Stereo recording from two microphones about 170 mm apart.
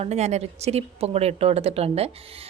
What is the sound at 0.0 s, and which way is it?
Speech, 40° right (ahead or behind).